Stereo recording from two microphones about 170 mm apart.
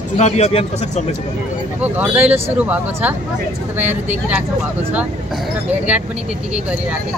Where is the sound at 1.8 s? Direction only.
10° right (ahead or behind).